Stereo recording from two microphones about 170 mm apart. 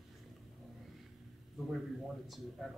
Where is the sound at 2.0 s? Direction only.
Centre (ahead or behind).